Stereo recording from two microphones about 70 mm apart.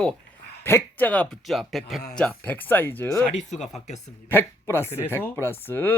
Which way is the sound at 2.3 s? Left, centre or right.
Left.